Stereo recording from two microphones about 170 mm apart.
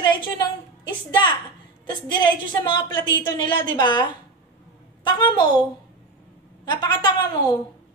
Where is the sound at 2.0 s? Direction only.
25° left (ahead or behind).